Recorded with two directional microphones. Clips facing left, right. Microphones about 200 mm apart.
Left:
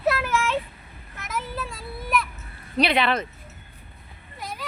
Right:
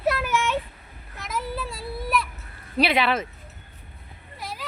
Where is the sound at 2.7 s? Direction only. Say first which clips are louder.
Even; 5° right (ahead or behind).